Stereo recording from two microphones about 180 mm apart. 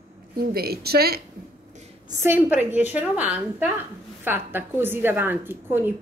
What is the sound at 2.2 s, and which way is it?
A woman's voice, 10° right (ahead or behind).